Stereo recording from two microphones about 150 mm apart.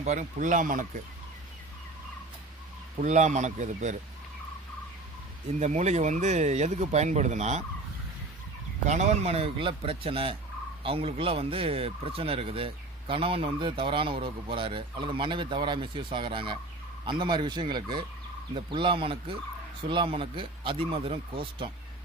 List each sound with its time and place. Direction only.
0.0 s speech: 55° right (ahead or behind)
3.0 s speech: 55° right (ahead or behind)
5.5 s speech: 50° right (ahead or behind)
8.9 s fowl: 50° right (ahead or behind)